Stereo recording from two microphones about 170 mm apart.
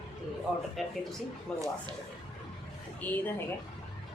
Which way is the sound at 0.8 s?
Centre (ahead or behind).